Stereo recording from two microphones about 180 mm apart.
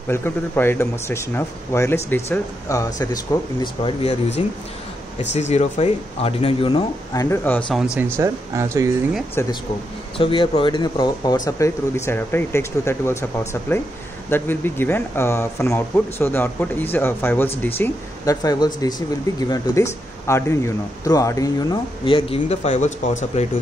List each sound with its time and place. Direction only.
0.1 s speech: 10° left (ahead or behind)
3.6 s speech: 30° left (ahead or behind)
5.3 s speech: 40° left (ahead or behind)
7.2 s speech: 10° left (ahead or behind)
7.7 s speech: 5° right (ahead or behind)
8.2 s speech: 15° right (ahead or behind)
10.1 s speech: 30° left (ahead or behind)